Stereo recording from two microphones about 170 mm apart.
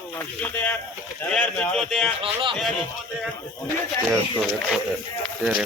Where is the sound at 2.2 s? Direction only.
30° right (ahead or behind).